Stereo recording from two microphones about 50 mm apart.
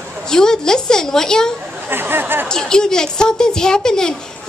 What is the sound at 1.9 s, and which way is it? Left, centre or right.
Speech, right.